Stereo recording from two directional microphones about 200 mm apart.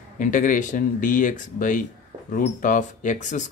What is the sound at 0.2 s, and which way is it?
Speech, 40° left (ahead or behind).